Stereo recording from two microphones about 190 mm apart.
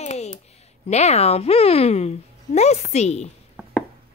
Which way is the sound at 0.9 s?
35° left (ahead or behind).